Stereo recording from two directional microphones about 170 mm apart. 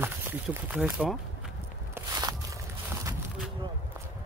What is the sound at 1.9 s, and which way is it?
Walk, 20° right (ahead or behind).